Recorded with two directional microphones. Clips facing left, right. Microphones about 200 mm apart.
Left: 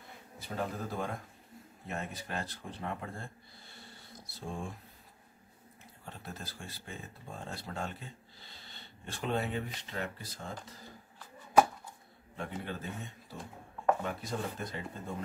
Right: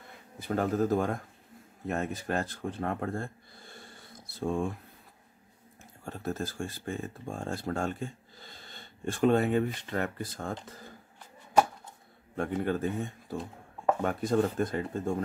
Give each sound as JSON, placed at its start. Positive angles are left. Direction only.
{"t": 0.4, "sound": "speech", "side_deg": -55}
{"t": 4.4, "sound": "speech", "side_deg": -60}
{"t": 6.0, "sound": "speech", "side_deg": -45}
{"t": 12.4, "sound": "speech", "side_deg": -50}